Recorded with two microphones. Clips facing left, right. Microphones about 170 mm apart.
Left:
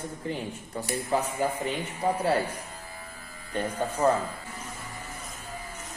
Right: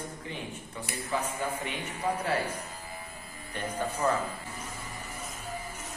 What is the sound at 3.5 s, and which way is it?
Speech, 30° left (ahead or behind).